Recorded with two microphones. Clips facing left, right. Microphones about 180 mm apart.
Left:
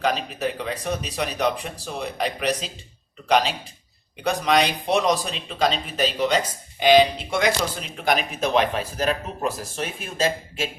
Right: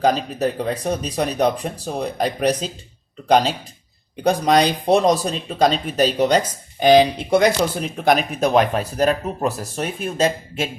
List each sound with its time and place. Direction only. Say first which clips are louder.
0.0 s speech: right 6 dB; 40° right (ahead or behind)